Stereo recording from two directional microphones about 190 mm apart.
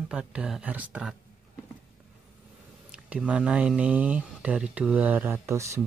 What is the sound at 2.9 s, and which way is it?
Speech, 5° right (ahead or behind).